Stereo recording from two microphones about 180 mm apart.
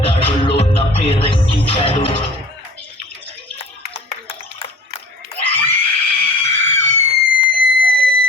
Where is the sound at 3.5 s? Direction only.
35° left (ahead or behind).